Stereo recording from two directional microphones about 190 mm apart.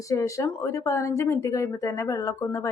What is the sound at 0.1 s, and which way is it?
Speech, 15° left (ahead or behind).